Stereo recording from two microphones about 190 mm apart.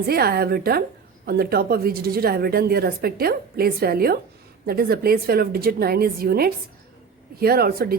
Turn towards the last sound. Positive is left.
turn(degrees=-50)  # may be behind; listen again after turning